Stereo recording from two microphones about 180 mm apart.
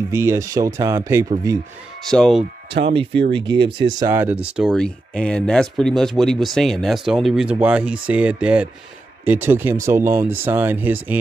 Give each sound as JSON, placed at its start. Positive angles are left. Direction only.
{"t": 0.1, "sound": "speech", "side_deg": -15}
{"t": 2.0, "sound": "speech", "side_deg": 5}
{"t": 2.7, "sound": "speech", "side_deg": -30}
{"t": 4.0, "sound": "speech", "side_deg": -15}